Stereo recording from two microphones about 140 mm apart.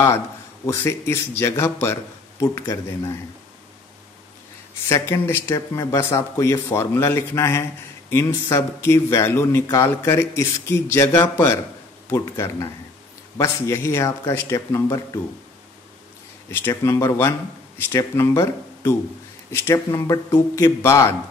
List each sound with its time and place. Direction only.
0.7 s speech: 20° left (ahead or behind)
4.8 s speech: 20° left (ahead or behind)
16.4 s speech: 15° left (ahead or behind)